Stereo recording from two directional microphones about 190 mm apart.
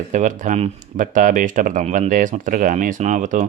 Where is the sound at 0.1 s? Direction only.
40° right (ahead or behind).